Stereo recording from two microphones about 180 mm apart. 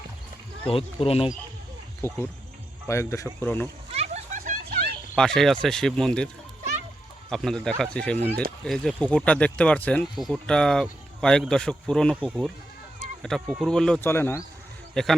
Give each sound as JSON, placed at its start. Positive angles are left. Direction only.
{"t": 0.7, "sound": "speech", "side_deg": 30}
{"t": 2.0, "sound": "speech", "side_deg": 15}
{"t": 3.9, "sound": "a sound", "side_deg": -40}
{"t": 5.1, "sound": "speech", "side_deg": 5}
{"t": 13.2, "sound": "speech", "side_deg": 0}
{"t": 15.0, "sound": "speech", "side_deg": 5}